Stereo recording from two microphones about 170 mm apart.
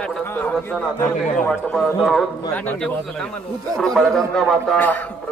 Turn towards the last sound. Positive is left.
turn(degrees=10)  # may be behind; listen again after turning